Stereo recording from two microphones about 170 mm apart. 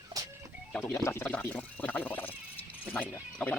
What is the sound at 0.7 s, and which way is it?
Speech, 15° left (ahead or behind).